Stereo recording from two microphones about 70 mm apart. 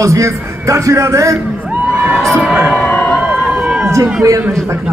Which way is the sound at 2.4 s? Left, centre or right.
Centre.